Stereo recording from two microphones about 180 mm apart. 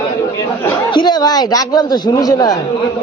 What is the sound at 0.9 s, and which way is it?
A man's voice, 25° left (ahead or behind).